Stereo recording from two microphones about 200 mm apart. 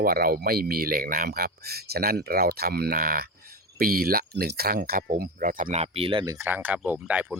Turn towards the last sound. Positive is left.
turn(degrees=-5)  # may be behind; listen again after turning